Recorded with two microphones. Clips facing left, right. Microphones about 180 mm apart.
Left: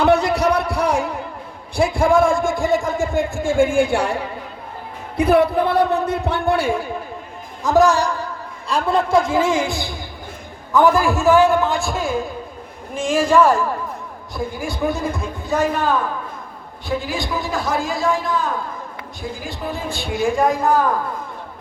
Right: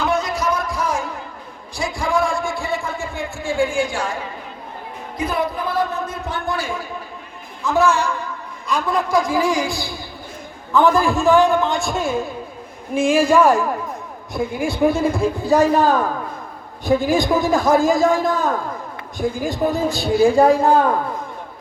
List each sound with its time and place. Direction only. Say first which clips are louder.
0.0 s a sound: left 5 dB; 65° left (ahead or behind)
1.7 s a man's voice: left 6 dB; 55° left (ahead or behind)
7.6 s a man's voice: left 3 dB; 40° left (ahead or behind); by 10.0 s 20° left (ahead or behind)
10.8 s a man's voice: even; 10° left (ahead or behind); by 13.6 s 10° right (ahead or behind)
14.3 s a man's voice: right 4 dB; 25° right (ahead or behind)